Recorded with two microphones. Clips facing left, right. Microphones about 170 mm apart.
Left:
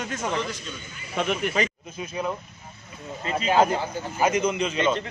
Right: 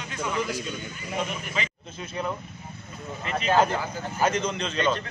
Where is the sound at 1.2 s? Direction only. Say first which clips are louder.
Left 7 dB; 75° left (ahead or behind).